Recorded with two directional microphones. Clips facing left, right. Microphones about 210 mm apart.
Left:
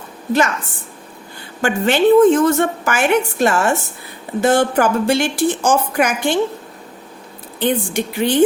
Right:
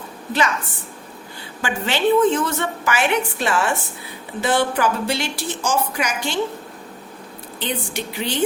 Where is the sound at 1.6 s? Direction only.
50° left (ahead or behind).